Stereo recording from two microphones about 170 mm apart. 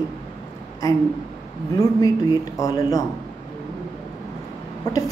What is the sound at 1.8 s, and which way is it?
A woman's voice, 20° left (ahead or behind).